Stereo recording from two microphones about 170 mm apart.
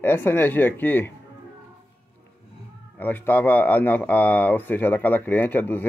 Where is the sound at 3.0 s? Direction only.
10° left (ahead or behind).